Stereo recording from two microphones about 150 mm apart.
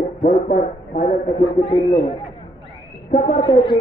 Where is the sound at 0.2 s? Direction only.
60° left (ahead or behind).